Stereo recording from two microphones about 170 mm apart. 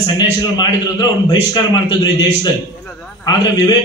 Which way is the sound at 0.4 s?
25° left (ahead or behind).